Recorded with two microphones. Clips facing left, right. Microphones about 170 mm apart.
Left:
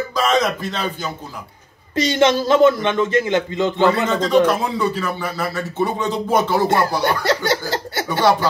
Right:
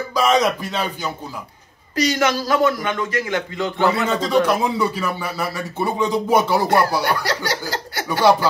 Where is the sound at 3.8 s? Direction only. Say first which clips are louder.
Left 1 dB; 10° right (ahead or behind).